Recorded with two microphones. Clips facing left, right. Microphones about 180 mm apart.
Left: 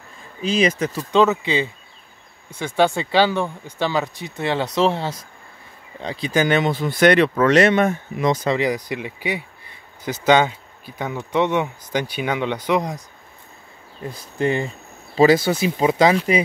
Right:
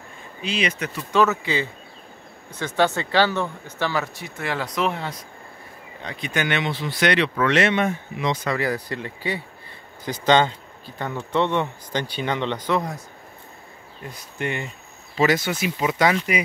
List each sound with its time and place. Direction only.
0.4 s speech: 40° left (ahead or behind)
1.1 s speech: 20° left (ahead or behind); by 8.4 s 45° left (ahead or behind)
8.5 s speech: 15° left (ahead or behind)
14.0 s speech: 30° left (ahead or behind)